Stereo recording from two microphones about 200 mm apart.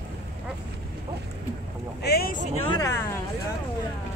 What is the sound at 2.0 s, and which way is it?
Boat, 50° left (ahead or behind).